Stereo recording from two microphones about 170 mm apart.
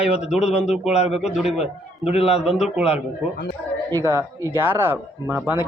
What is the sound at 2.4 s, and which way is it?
Speech, 5° right (ahead or behind).